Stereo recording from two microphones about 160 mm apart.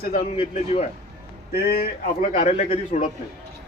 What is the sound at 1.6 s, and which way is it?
Speech, 75° left (ahead or behind).